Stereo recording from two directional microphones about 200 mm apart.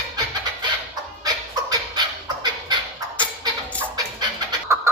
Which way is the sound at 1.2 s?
20° right (ahead or behind).